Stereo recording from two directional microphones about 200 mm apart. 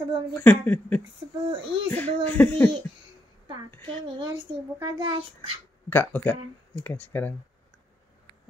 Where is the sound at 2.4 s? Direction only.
10° left (ahead or behind).